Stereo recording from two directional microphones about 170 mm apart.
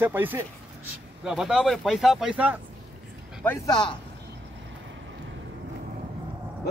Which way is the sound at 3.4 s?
15° left (ahead or behind).